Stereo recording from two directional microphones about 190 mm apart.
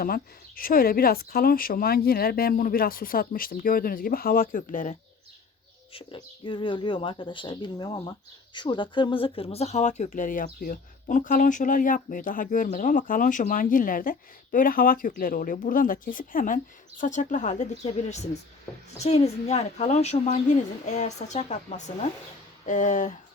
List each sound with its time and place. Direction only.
0.0 s speech: 50° left (ahead or behind)
5.9 s a woman's voice: 30° left (ahead or behind)